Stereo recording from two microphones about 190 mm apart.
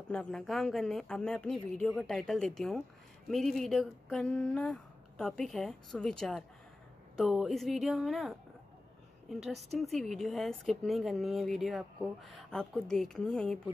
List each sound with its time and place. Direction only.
0.1 s a woman's voice: 5° left (ahead or behind)